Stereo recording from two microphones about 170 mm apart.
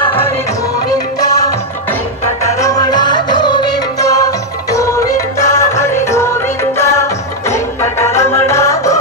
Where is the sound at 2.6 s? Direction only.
20° left (ahead or behind).